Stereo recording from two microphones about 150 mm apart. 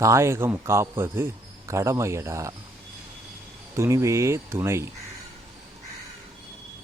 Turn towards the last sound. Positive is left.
turn(degrees=-15)  # may be behind; listen again after turning